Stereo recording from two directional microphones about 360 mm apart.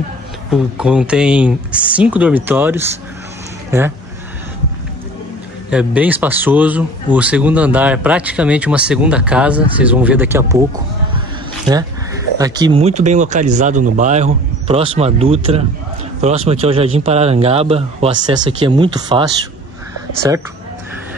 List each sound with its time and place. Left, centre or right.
0.5 s speech: centre
5.7 s speech: centre
12.4 s speech: centre